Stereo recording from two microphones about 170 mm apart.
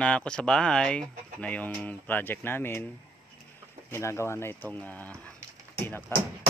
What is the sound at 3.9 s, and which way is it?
Speech, 15° left (ahead or behind).